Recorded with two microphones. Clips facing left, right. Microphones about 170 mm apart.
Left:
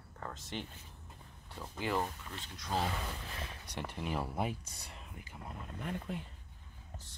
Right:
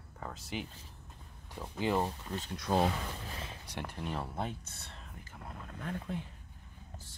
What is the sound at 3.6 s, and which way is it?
Speech, centre (ahead or behind).